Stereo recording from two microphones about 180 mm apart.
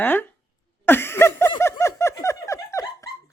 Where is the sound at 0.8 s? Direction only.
10° left (ahead or behind).